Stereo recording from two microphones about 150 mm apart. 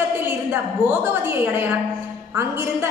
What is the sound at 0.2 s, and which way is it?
A woman's voice, 15° right (ahead or behind).